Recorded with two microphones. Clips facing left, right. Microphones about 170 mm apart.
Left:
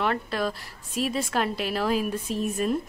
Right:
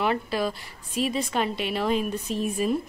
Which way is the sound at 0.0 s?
Centre (ahead or behind).